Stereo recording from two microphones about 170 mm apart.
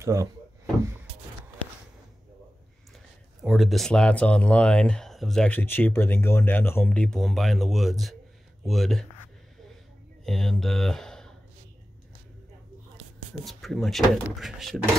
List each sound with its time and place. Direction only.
0.0 s speech: 20° right (ahead or behind)
3.4 s speech: centre (ahead or behind)
10.2 s speech: 5° left (ahead or behind)
13.5 s speech: centre (ahead or behind)